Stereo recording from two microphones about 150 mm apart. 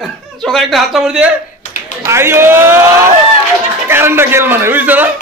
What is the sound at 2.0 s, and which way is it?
A man's voice, 15° right (ahead or behind).